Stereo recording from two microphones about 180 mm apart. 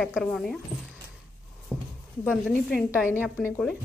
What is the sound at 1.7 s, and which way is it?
Horse, 5° right (ahead or behind).